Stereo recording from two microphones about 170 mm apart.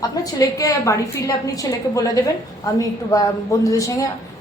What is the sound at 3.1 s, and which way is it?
A woman's voice, 20° left (ahead or behind).